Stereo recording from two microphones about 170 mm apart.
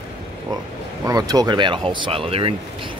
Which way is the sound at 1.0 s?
20° right (ahead or behind).